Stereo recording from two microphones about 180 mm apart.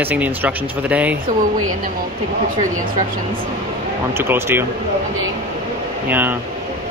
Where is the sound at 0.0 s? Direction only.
10° right (ahead or behind).